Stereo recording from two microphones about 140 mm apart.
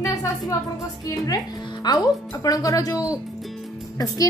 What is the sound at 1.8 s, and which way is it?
A child's voice, 30° left (ahead or behind).